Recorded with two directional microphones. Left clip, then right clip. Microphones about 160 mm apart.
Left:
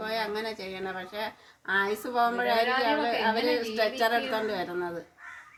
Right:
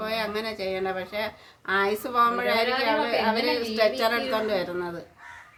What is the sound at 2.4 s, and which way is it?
Speech, 5° left (ahead or behind).